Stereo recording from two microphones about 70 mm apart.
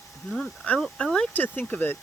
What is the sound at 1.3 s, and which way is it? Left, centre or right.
Speech, left.